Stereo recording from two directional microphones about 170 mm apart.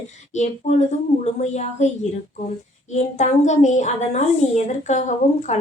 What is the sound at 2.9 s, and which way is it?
Speech, 45° left (ahead or behind).